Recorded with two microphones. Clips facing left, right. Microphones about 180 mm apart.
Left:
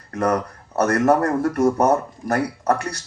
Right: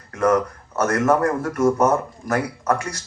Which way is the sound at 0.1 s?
35° left (ahead or behind).